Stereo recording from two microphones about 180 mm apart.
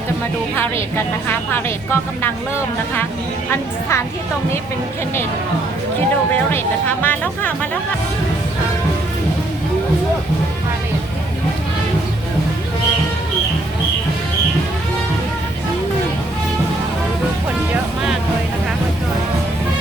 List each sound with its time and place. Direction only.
0.5 s a woman's voice: 10° left (ahead or behind)
3.5 s a woman's voice: 15° left (ahead or behind)
6.5 s a woman's voice: 10° left (ahead or behind)